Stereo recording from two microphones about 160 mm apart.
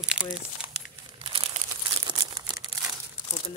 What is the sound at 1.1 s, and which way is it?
Crumpling, 35° right (ahead or behind).